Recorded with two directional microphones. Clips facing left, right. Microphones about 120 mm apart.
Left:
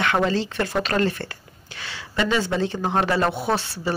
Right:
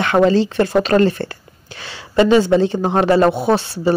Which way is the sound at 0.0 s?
30° right (ahead or behind).